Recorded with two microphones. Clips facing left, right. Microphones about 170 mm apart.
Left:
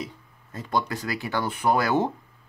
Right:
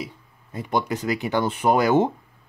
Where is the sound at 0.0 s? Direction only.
15° right (ahead or behind).